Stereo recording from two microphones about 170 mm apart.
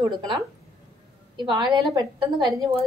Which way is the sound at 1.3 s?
25° right (ahead or behind).